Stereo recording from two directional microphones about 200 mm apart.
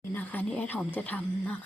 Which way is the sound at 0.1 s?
10° left (ahead or behind).